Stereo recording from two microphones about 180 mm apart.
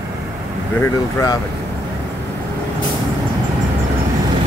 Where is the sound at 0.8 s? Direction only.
20° left (ahead or behind).